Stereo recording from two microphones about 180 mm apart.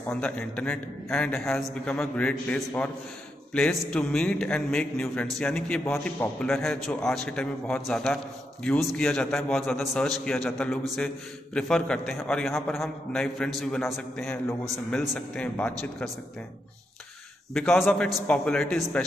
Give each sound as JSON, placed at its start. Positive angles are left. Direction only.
{"t": 0.1, "sound": "a man's voice", "side_deg": 5}
{"t": 3.9, "sound": "a man's voice", "side_deg": 5}
{"t": 17.6, "sound": "a man's voice", "side_deg": 0}